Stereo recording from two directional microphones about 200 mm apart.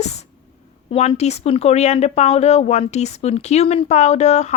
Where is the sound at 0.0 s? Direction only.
35° left (ahead or behind).